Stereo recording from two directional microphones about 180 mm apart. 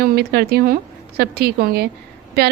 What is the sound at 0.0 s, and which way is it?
A woman's voice, 60° right (ahead or behind).